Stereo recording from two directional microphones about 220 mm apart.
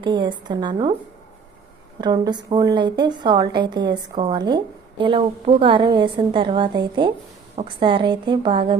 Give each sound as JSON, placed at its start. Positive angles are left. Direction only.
{"t": 0.0, "sound": "a woman's voice", "side_deg": -20}
{"t": 2.0, "sound": "a woman's voice", "side_deg": -20}